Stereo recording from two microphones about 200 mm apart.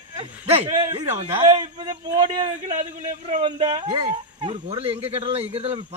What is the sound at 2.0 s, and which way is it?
Speech, 25° right (ahead or behind).